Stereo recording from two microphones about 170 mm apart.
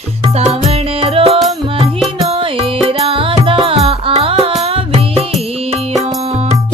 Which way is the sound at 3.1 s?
30° right (ahead or behind).